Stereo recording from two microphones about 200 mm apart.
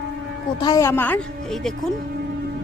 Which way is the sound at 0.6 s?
15° left (ahead or behind).